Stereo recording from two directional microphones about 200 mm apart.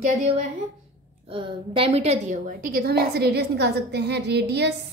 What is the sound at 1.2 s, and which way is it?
A woman's voice, 25° right (ahead or behind).